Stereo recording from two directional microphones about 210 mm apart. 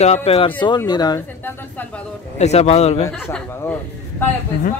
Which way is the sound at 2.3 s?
30° left (ahead or behind).